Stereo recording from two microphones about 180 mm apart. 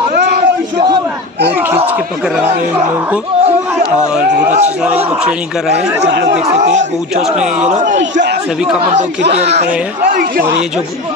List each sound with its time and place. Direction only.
0.1 s a sound: 65° right (ahead or behind)
4.5 s a man's voice: 40° right (ahead or behind)
4.8 s speech: 10° right (ahead or behind)
6.0 s speech: 70° right (ahead or behind)
7.6 s speech: 40° right (ahead or behind)
8.0 s speech: 80° right